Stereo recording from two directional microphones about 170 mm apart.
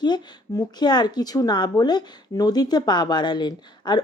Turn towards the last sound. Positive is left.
turn(degrees=25)  # may be behind; listen again after turning